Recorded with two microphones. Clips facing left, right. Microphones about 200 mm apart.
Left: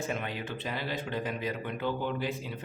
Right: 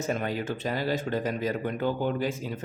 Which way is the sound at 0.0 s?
40° right (ahead or behind).